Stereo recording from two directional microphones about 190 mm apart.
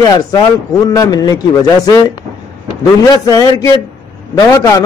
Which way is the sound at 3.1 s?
20° left (ahead or behind).